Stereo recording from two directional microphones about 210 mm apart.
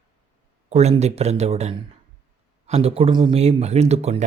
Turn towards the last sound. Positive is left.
turn(degrees=-30)  # may be behind; listen again after turning